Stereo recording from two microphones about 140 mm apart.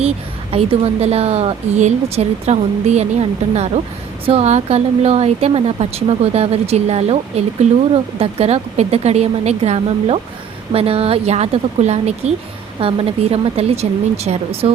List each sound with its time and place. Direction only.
0.5 s speech: 45° right (ahead or behind)
12.8 s a woman's voice: 40° right (ahead or behind)